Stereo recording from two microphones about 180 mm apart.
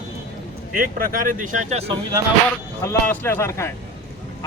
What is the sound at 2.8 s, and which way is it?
Speech, 15° left (ahead or behind).